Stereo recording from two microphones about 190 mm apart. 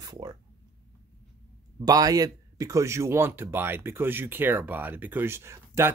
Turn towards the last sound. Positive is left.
turn(degrees=-15)  # may be behind; listen again after turning